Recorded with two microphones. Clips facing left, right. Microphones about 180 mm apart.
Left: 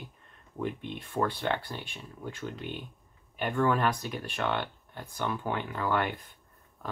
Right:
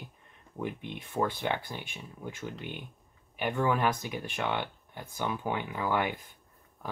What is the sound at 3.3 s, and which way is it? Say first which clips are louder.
Speech: left 1 dB; 10° right (ahead or behind).